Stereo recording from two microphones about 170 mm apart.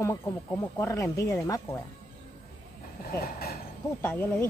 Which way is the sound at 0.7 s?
15° left (ahead or behind).